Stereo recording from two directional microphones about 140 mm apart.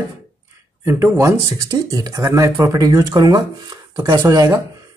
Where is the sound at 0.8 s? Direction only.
20° right (ahead or behind).